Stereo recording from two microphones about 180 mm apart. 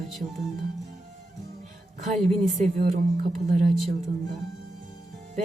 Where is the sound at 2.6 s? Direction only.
50° right (ahead or behind).